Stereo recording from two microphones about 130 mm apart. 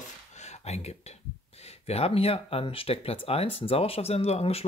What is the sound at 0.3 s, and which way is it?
Speech, 60° left (ahead or behind).